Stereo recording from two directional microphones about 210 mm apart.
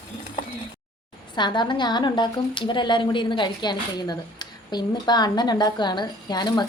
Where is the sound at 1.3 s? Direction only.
20° left (ahead or behind).